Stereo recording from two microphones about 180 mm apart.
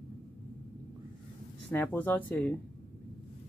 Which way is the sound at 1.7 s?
10° left (ahead or behind).